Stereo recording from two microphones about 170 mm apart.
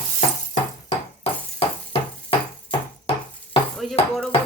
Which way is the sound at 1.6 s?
35° left (ahead or behind).